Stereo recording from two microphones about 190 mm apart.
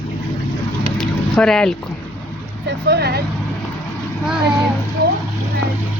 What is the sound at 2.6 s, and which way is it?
Speech, 60° right (ahead or behind).